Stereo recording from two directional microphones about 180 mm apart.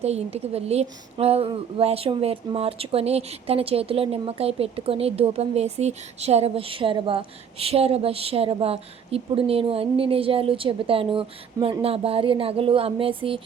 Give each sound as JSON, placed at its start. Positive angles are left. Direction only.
{"t": 0.0, "sound": "a woman's voice", "side_deg": -35}